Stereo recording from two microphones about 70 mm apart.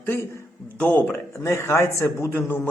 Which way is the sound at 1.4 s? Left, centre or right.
Left.